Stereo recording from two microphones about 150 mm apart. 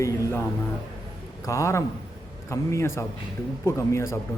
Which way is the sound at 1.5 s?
20° left (ahead or behind).